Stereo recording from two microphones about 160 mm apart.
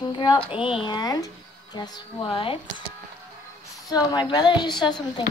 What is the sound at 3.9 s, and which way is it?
Speech, 25° left (ahead or behind).